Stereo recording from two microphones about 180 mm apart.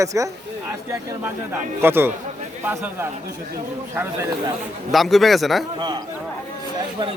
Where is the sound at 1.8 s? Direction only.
10° right (ahead or behind).